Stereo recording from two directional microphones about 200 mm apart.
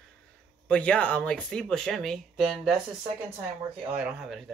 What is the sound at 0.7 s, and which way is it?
Speech, 5° left (ahead or behind).